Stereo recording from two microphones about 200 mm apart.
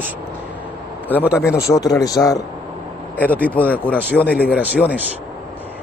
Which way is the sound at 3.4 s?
5° left (ahead or behind).